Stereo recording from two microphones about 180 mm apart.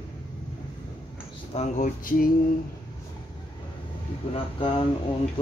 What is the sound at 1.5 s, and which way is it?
Mantra, 35° left (ahead or behind).